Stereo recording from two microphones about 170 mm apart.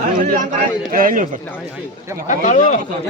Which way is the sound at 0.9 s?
55° right (ahead or behind).